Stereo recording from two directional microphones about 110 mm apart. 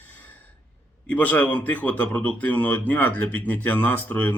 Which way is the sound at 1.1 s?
15° left (ahead or behind).